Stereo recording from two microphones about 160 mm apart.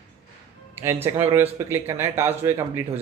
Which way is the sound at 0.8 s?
15° right (ahead or behind).